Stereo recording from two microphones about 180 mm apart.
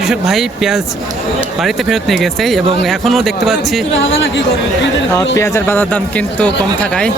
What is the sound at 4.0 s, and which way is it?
Speech, 90° left.